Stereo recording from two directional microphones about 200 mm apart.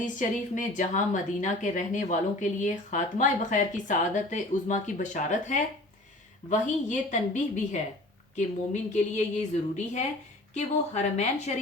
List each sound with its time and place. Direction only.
0.0 s a woman's voice: 40° left (ahead or behind)
8.9 s a woman's voice: 35° left (ahead or behind)